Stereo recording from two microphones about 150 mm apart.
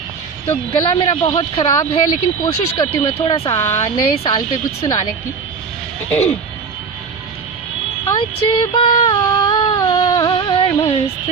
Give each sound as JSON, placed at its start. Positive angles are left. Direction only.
{"t": 0.4, "sound": "speech", "side_deg": 30}
{"t": 3.4, "sound": "speech", "side_deg": 20}
{"t": 3.8, "sound": "speech", "side_deg": 30}
{"t": 6.1, "sound": "speech", "side_deg": 10}
{"t": 8.2, "sound": "speech", "side_deg": 30}
{"t": 9.1, "sound": "a sound", "side_deg": 25}